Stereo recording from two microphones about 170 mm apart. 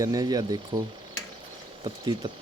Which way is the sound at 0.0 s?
20° right (ahead or behind).